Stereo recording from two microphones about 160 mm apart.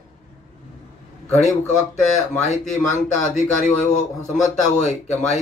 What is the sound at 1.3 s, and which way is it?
Speech, 45° left (ahead or behind).